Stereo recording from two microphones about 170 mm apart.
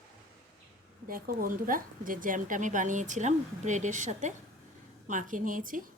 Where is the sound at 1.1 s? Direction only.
55° right (ahead or behind).